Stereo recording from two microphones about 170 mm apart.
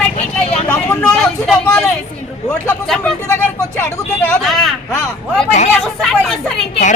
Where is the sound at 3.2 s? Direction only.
15° left (ahead or behind).